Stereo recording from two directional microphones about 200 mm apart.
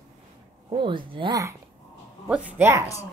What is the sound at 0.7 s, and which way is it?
Speech, 25° right (ahead or behind).